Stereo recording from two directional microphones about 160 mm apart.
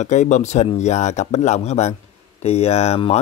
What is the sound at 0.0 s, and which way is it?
Speech, 50° left (ahead or behind).